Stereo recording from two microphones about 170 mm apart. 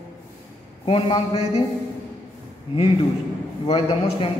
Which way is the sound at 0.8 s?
30° left (ahead or behind).